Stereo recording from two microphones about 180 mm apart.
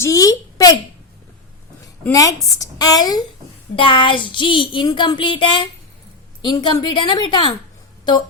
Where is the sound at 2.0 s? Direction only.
20° left (ahead or behind).